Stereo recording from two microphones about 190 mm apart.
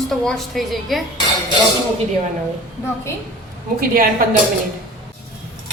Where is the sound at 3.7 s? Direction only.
50° right (ahead or behind).